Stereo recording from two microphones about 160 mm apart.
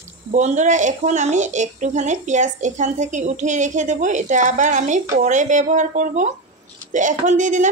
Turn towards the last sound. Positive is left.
turn(degrees=-50)  # may be behind; listen again after turning